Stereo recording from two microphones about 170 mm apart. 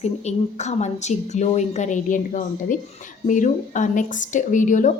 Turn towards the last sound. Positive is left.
turn(degrees=50)  # may be behind; listen again after turning